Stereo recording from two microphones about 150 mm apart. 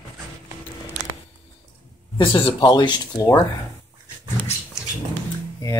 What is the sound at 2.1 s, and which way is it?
Speech, 35° left (ahead or behind).